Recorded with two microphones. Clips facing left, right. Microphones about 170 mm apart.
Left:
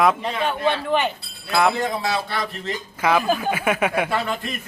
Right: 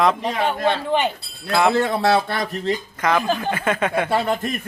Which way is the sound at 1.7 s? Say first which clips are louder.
Right 6 dB; 70° right (ahead or behind).